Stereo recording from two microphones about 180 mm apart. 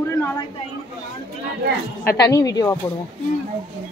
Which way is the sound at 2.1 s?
20° left (ahead or behind).